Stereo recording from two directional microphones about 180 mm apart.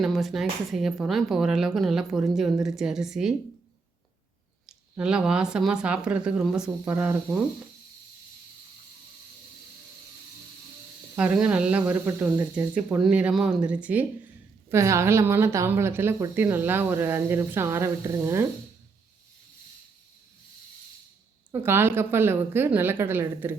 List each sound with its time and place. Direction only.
0.0 s speech: centre (ahead or behind)
4.9 s speech: 5° right (ahead or behind)
11.1 s speech: 5° right (ahead or behind)
21.5 s speech: 10° right (ahead or behind)